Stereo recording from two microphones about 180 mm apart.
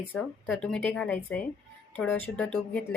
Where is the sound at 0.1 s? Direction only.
5° left (ahead or behind).